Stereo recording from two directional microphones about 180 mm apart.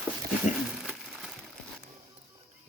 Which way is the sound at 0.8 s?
Centre (ahead or behind).